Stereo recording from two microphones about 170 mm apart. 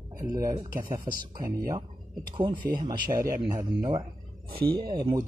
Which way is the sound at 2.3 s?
30° right (ahead or behind).